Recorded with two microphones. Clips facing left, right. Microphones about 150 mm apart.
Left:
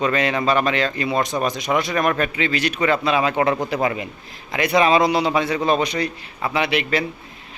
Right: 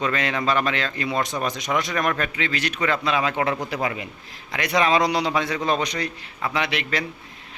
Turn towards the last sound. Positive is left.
turn(degrees=10)  # may be behind; listen again after turning